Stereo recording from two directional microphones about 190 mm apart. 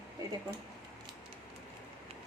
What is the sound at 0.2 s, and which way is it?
Speech, 20° right (ahead or behind).